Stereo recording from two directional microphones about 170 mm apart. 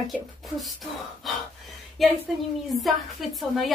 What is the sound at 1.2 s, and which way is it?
Speech, centre (ahead or behind).